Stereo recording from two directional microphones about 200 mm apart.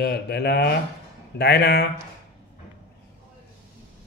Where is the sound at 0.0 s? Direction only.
55° left (ahead or behind).